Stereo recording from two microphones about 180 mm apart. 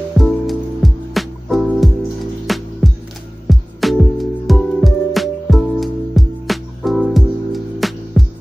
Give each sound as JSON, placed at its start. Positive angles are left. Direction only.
{"t": 0.2, "sound": "music", "side_deg": 0}